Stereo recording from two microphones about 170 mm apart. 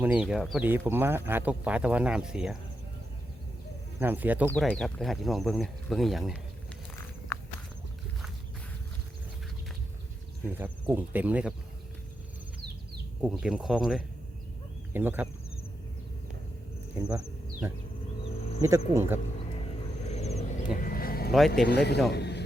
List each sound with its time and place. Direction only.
0.0 s speech: 5° right (ahead or behind)
0.7 s speech: 10° right (ahead or behind)
4.0 s speech: 10° right (ahead or behind)
4.4 s speech: 5° left (ahead or behind)
10.4 s speech: 10° right (ahead or behind)
13.2 s speech: 5° right (ahead or behind)
17.1 s insect: 5° right (ahead or behind)
18.3 s cricket: 35° left (ahead or behind)
18.9 s speech: 15° right (ahead or behind)
20.0 s vehicle: 40° left (ahead or behind)
20.7 s a sound: 55° left (ahead or behind)
21.5 s speech: 70° left (ahead or behind)
22.1 s a sound: 80° left